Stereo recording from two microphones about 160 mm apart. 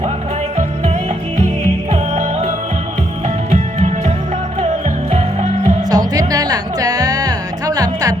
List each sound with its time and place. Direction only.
1.9 s music: 40° right (ahead or behind)
5.1 s music: 35° right (ahead or behind)
5.9 s music: 25° right (ahead or behind)